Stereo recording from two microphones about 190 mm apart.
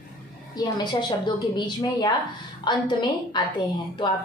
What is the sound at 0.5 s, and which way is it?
A woman's voice, 20° left (ahead or behind).